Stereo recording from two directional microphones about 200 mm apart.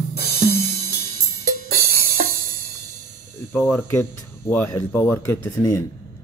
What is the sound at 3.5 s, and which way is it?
Speech, 10° left (ahead or behind).